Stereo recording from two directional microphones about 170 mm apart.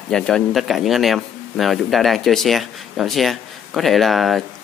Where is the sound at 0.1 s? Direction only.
Centre (ahead or behind).